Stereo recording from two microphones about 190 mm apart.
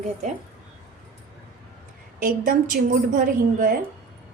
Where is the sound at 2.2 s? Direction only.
45° right (ahead or behind).